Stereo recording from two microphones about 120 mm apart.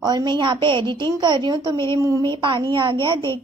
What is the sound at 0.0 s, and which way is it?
A woman's voice, 35° right (ahead or behind).